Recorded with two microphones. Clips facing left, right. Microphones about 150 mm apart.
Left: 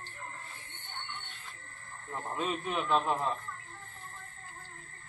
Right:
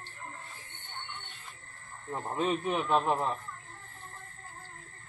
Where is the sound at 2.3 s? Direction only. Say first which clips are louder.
Right 4 dB; 30° right (ahead or behind).